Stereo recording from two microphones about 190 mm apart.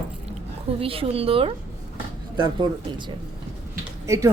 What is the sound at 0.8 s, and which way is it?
Speech, 30° right (ahead or behind).